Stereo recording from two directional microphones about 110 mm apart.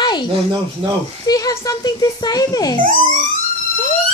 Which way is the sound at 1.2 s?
35° left (ahead or behind).